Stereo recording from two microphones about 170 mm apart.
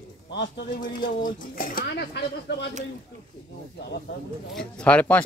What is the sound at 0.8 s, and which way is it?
Speech, 55° left (ahead or behind).